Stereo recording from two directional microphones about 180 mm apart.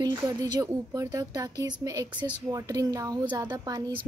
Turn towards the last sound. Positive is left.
turn(degrees=-25)  # may be behind; listen again after turning